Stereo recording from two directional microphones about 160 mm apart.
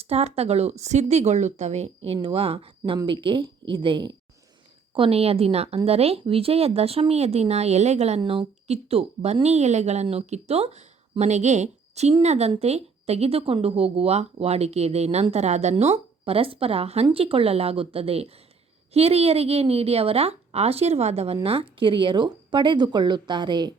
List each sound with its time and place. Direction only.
0.0 s a woman's voice: 40° right (ahead or behind)